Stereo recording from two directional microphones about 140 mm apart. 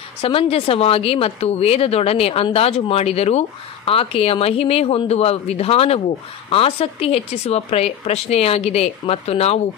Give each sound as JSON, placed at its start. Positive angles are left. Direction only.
{"t": 0.2, "sound": "speech", "side_deg": 40}